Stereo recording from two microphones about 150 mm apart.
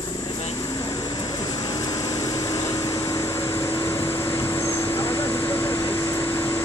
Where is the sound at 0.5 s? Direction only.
25° left (ahead or behind).